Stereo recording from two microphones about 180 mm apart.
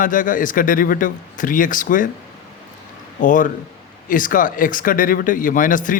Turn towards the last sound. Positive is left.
turn(degrees=50)  # may be behind; listen again after turning